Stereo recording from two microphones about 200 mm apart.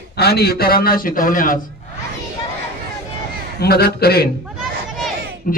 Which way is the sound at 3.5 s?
50° left (ahead or behind).